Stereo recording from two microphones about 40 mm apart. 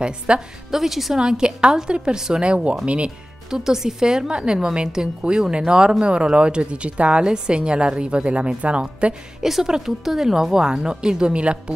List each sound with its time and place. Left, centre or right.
0.3 s a woman's voice: right
0.7 s speech: centre
1.2 s a woman's voice: centre
2.4 s a woman's voice: right
3.4 s a woman's voice: centre; by 9.1 s right
9.4 s speech: centre; by 11.7 s right